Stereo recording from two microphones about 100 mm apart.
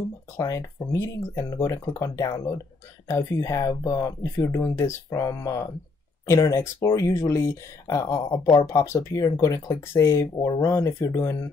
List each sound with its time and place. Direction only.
0.4 s speech: 30° left (ahead or behind)
10.3 s speech: 40° left (ahead or behind)